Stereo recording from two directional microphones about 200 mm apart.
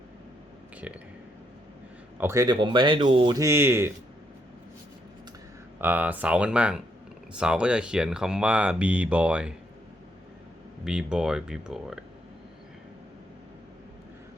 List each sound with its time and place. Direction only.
2.1 s speech: 15° right (ahead or behind)
5.8 s speech: 10° right (ahead or behind)
10.8 s speech: 5° right (ahead or behind)